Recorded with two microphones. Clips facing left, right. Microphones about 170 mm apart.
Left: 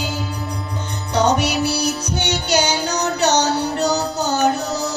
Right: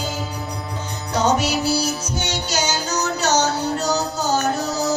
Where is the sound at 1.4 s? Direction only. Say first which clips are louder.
Left 1 dB; 65° left (ahead or behind).